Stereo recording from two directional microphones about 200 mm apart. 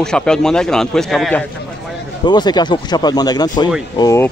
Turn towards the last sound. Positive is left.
turn(degrees=15)  # may be behind; listen again after turning